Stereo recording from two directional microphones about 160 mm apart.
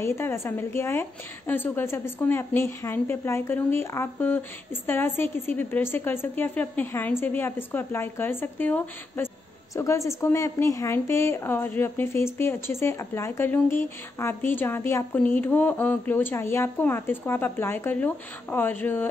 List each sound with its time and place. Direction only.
0.0 s a woman's voice: 15° left (ahead or behind)